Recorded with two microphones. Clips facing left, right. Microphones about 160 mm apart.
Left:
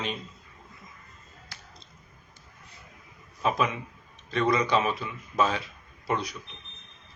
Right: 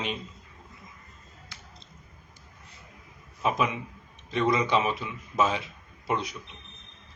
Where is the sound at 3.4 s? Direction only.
15° right (ahead or behind).